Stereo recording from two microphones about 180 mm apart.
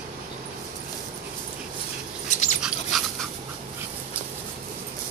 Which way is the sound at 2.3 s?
45° left (ahead or behind).